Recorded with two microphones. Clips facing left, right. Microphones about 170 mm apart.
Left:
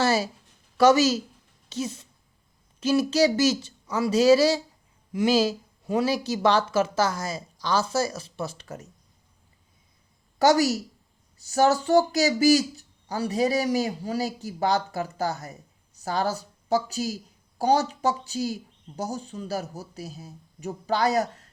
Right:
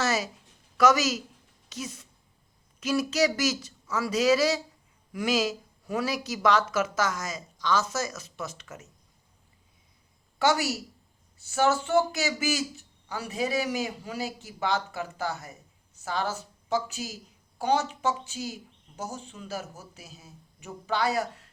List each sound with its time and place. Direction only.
0.0 s speech: 30° left (ahead or behind)
10.3 s a woman's voice: 40° left (ahead or behind)